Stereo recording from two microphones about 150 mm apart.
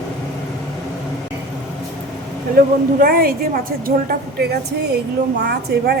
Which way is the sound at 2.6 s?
75° right (ahead or behind).